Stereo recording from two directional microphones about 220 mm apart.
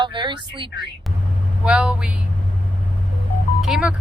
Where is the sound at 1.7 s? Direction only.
5° right (ahead or behind).